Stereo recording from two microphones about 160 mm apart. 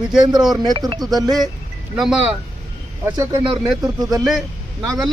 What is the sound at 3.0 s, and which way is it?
Speech, 15° right (ahead or behind).